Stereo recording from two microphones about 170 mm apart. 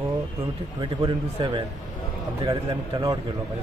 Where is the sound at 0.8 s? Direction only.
25° right (ahead or behind).